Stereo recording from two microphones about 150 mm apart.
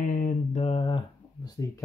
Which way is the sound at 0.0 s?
65° left (ahead or behind).